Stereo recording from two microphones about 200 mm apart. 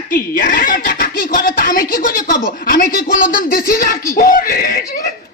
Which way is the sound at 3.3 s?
45° left (ahead or behind).